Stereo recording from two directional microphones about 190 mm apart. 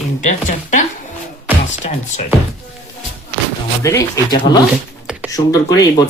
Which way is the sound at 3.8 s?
15° left (ahead or behind).